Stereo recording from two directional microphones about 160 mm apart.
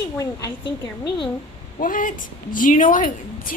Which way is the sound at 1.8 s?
55° left (ahead or behind).